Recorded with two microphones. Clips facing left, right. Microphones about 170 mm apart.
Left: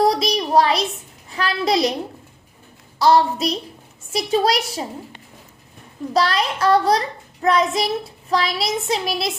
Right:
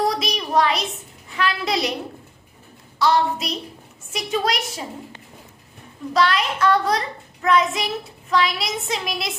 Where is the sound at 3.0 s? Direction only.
35° left (ahead or behind).